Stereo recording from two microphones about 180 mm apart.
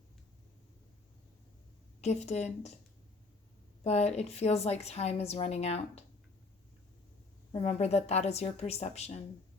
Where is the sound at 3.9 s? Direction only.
35° left (ahead or behind).